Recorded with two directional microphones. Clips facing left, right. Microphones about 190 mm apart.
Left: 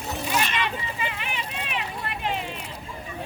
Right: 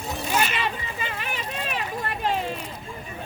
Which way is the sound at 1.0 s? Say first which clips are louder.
Right 2 dB; 40° right (ahead or behind).